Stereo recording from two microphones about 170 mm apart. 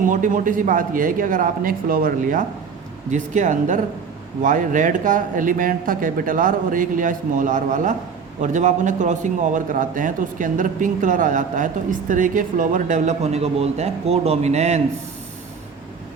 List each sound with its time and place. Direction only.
0.1 s a man's voice: 50° right (ahead or behind)